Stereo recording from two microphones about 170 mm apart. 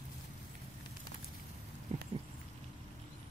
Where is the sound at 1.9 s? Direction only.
35° right (ahead or behind).